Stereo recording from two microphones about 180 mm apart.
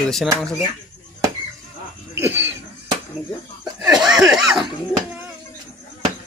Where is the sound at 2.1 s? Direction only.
10° right (ahead or behind).